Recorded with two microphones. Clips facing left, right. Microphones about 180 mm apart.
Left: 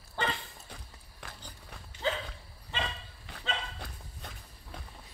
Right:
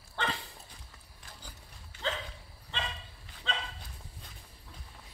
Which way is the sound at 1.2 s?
70° left (ahead or behind).